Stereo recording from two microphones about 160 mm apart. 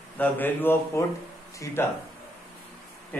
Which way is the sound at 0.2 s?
10° left (ahead or behind).